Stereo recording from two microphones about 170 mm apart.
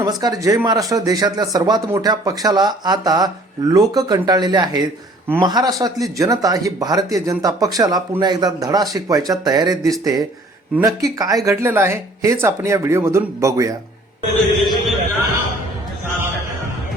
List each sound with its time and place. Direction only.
0.0 s speech: 25° right (ahead or behind)
14.6 s a man's voice: centre (ahead or behind)